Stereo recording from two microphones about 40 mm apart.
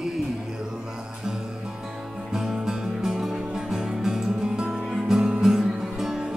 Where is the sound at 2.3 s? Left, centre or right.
Centre.